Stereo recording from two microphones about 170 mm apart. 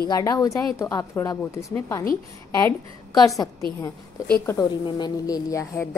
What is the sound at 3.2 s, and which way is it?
Speech, 20° left (ahead or behind).